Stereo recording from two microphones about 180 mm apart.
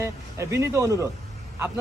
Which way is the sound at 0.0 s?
15° right (ahead or behind).